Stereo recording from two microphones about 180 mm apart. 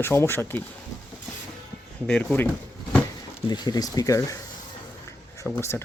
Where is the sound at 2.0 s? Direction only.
10° left (ahead or behind).